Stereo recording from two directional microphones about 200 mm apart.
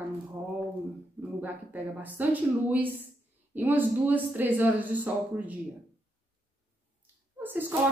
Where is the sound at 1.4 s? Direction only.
10° right (ahead or behind).